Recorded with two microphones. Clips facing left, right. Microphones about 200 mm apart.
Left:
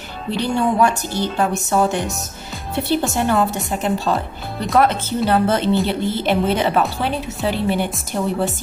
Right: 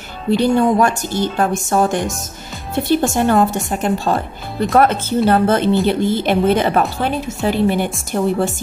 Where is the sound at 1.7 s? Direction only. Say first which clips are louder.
Right 2 dB; 45° right (ahead or behind).